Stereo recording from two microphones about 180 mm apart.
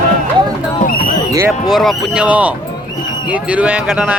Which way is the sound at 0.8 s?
55° left (ahead or behind).